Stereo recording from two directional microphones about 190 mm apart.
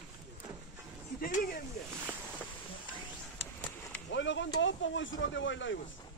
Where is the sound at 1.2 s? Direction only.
50° left (ahead or behind).